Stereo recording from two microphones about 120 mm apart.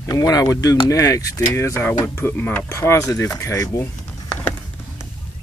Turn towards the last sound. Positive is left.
turn(degrees=15)  # may be behind; listen again after turning